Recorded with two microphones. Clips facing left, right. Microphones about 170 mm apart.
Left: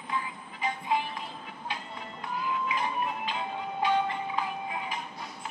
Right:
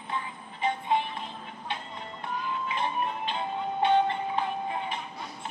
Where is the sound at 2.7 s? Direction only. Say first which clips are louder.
Right 1 dB; 30° right (ahead or behind).